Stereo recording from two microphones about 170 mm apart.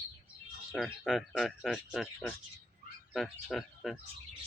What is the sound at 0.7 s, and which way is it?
Speech, 5° left (ahead or behind).